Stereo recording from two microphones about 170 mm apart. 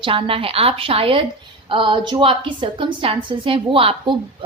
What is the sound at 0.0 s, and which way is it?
A woman's voice, 30° right (ahead or behind).